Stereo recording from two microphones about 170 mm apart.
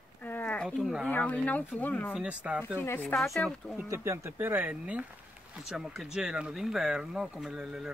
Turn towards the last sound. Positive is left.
turn(degrees=-5)  # may be behind; listen again after turning